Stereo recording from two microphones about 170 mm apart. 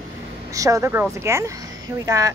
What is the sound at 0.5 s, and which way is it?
Speech, 20° right (ahead or behind).